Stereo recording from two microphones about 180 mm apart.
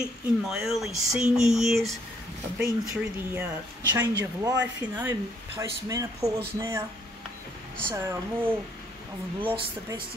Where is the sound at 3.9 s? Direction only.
20° right (ahead or behind).